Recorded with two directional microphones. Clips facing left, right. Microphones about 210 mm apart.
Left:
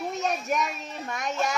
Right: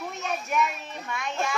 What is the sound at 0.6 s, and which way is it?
Child singing, 40° left (ahead or behind).